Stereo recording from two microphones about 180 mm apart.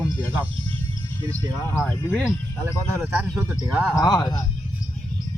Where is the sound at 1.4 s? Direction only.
25° right (ahead or behind).